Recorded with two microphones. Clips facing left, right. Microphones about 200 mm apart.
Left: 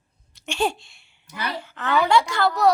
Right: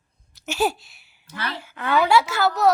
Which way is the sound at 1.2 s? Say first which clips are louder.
Left 1 dB; 15° left (ahead or behind).